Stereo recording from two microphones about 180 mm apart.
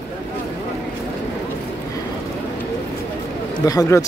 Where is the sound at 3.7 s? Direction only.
20° left (ahead or behind).